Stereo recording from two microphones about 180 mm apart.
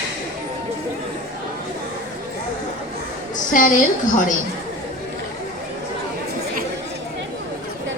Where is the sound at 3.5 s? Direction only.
50° left (ahead or behind).